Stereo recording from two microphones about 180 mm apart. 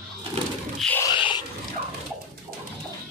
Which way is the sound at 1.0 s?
25° left (ahead or behind).